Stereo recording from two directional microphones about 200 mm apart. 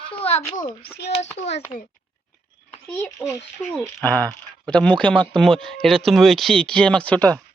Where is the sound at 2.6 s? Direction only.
10° left (ahead or behind).